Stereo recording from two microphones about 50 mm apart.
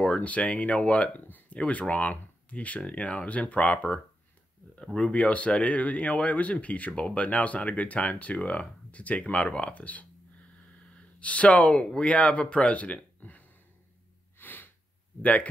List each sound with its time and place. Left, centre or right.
0.0 s speech: left
1.2 s speech: left
11.1 s a man's voice: left
14.4 s sneeze: left